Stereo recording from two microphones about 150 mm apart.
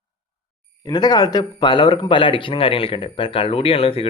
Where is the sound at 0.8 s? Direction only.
25° left (ahead or behind).